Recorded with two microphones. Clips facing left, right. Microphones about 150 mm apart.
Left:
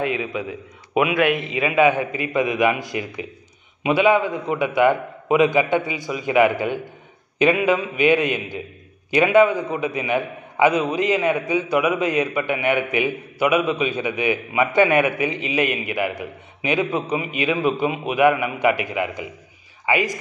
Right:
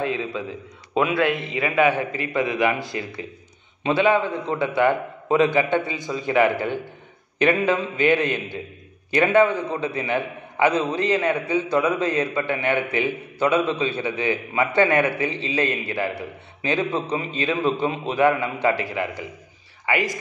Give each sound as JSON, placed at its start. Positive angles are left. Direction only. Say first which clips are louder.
{"t": 0.0, "sound": "a man's voice", "louder": "left 2 dB", "side_deg": 15}